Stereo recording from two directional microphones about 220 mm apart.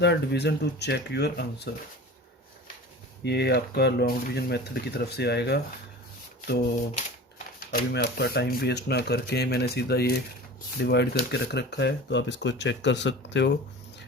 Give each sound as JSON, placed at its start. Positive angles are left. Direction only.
{"t": 0.0, "sound": "speech", "side_deg": 50}
{"t": 3.2, "sound": "speech", "side_deg": 50}
{"t": 6.9, "sound": "typewriter", "side_deg": 35}
{"t": 7.9, "sound": "speech", "side_deg": 45}